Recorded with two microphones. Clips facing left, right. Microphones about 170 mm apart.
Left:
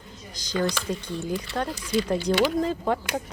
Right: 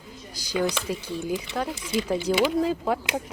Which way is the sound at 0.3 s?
10° right (ahead or behind).